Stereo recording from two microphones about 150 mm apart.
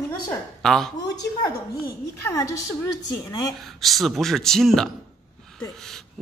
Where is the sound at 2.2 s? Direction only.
20° left (ahead or behind).